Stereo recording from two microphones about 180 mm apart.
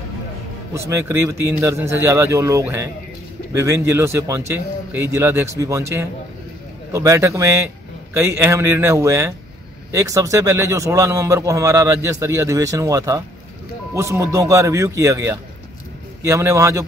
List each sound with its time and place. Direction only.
0.7 s a man's voice: 15° right (ahead or behind)